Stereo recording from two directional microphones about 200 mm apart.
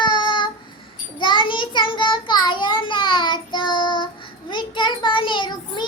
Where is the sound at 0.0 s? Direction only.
25° left (ahead or behind).